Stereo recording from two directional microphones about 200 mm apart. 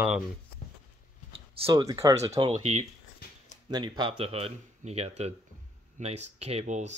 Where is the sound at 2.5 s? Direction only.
35° right (ahead or behind).